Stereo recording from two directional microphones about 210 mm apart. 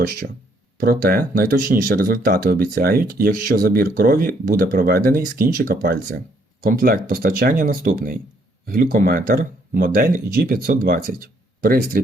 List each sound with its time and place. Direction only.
0.8 s speech: 45° right (ahead or behind)